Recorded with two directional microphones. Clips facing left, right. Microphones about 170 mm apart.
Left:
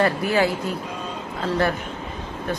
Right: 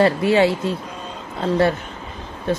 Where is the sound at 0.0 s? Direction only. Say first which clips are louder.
Right 5 dB; 25° right (ahead or behind).